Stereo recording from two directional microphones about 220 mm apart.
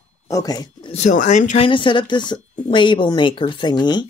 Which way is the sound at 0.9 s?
35° left (ahead or behind).